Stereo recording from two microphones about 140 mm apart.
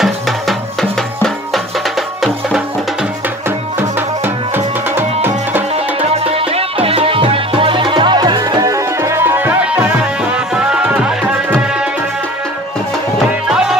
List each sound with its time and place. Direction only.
0.0 s music: centre (ahead or behind)
4.9 s music: 15° right (ahead or behind)
5.9 s music: 45° right (ahead or behind); by 11.3 s 5° right (ahead or behind)
13.5 s music: 5° right (ahead or behind)